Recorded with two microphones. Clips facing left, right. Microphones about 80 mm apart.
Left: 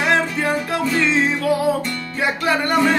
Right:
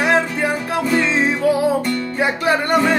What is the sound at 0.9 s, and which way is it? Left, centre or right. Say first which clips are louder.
Music: right 2 dB; right.